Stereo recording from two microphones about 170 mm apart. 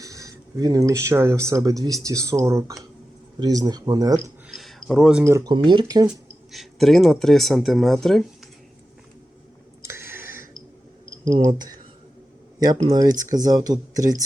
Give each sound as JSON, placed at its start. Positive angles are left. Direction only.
{"t": 0.0, "sound": "speech", "side_deg": -20}
{"t": 4.4, "sound": "a sound", "side_deg": 0}
{"t": 5.2, "sound": "speech", "side_deg": -15}
{"t": 6.5, "sound": "speech", "side_deg": 0}
{"t": 9.8, "sound": "a sound", "side_deg": -15}
{"t": 11.4, "sound": "speech", "side_deg": -25}
{"t": 12.9, "sound": "speech", "side_deg": -20}